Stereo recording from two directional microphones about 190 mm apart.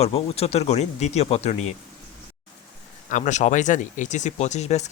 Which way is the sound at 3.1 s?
40° left (ahead or behind).